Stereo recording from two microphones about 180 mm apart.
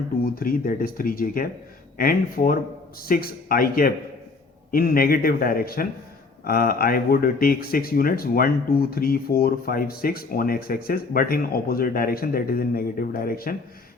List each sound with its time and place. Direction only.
0.3 s speech: 50° left (ahead or behind)